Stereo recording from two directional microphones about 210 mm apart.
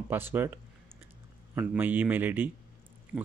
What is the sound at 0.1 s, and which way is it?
Speech, 10° right (ahead or behind).